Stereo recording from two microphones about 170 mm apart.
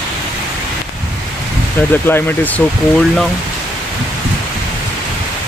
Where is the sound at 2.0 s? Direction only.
10° left (ahead or behind).